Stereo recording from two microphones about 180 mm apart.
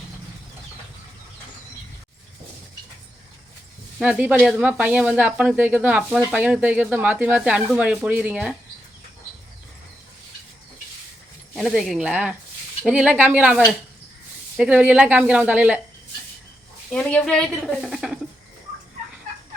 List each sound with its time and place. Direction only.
4.0 s speech: 5° right (ahead or behind)
11.5 s a woman's voice: centre (ahead or behind)
16.9 s a woman's voice: 5° left (ahead or behind)